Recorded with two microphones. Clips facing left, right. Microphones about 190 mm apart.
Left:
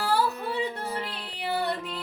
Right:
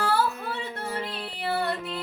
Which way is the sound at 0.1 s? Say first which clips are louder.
Even; 15° left (ahead or behind).